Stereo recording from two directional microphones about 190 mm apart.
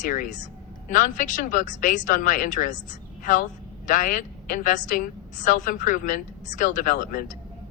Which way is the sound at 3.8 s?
40° left (ahead or behind).